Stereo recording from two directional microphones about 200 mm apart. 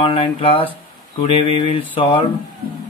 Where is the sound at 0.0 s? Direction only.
25° left (ahead or behind).